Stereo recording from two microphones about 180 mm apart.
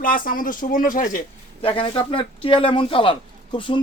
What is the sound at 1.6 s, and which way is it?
A man's voice, 30° left (ahead or behind).